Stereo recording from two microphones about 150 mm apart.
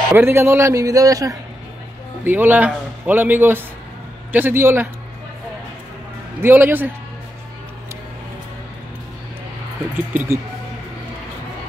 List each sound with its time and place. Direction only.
0.1 s a man's voice: 15° right (ahead or behind)
2.2 s a man's voice: 10° right (ahead or behind)
6.4 s a man's voice: 15° right (ahead or behind)
10.1 s a man's voice: 15° right (ahead or behind)